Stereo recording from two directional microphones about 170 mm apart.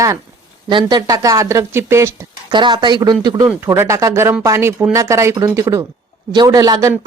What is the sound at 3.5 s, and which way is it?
Speech, 15° right (ahead or behind).